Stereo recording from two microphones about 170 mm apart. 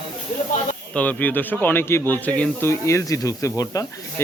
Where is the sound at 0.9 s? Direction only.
10° left (ahead or behind).